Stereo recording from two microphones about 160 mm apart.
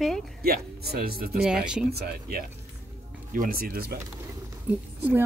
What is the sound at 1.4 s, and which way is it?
Speech, 5° right (ahead or behind).